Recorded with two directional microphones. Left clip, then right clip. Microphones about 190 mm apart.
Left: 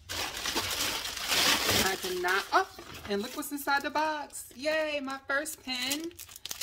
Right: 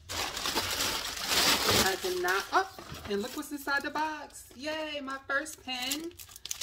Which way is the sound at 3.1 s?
45° left (ahead or behind).